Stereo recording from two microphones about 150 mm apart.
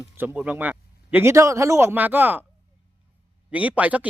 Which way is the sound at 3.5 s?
10° right (ahead or behind).